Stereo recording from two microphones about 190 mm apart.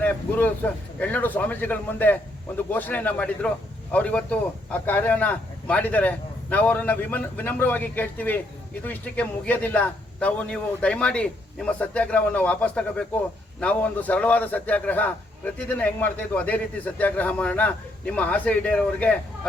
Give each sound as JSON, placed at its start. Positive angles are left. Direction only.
{"t": 0.0, "sound": "a man's voice", "side_deg": 10}